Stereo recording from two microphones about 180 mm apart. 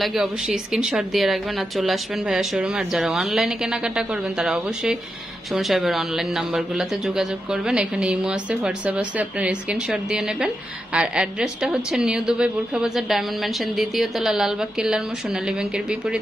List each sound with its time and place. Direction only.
0.0 s a man's voice: centre (ahead or behind)